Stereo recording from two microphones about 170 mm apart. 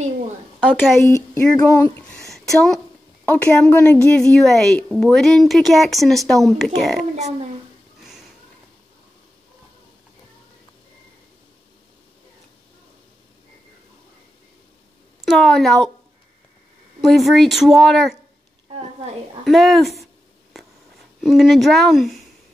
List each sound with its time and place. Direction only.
1.0 s a sound: 15° left (ahead or behind)
2.1 s a sound: centre (ahead or behind)
3.3 s a woman's voice: 10° left (ahead or behind)
7.2 s speech: 40° right (ahead or behind)
15.2 s a woman's voice: centre (ahead or behind)
17.0 s a woman's voice: centre (ahead or behind)
19.4 s a woman's voice: centre (ahead or behind)
21.2 s a woman's voice: centre (ahead or behind)